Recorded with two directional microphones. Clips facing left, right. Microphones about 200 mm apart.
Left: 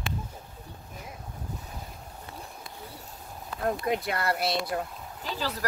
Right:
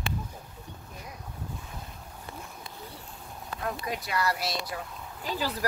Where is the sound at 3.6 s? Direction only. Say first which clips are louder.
Left 6 dB; 55° left (ahead or behind).